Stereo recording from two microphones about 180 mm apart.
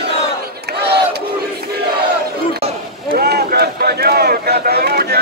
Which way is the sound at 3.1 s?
60° right (ahead or behind).